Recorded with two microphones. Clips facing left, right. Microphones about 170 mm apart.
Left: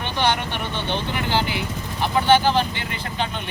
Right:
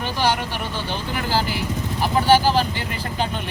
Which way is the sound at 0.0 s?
5° right (ahead or behind).